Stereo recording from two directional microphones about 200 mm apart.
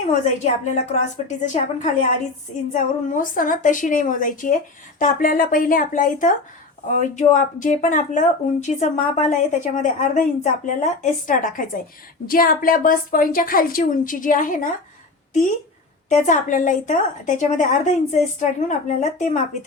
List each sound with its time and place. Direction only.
0.1 s a woman's voice: 35° left (ahead or behind)